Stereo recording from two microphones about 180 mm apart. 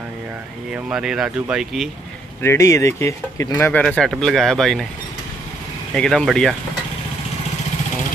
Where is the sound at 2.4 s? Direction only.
15° left (ahead or behind).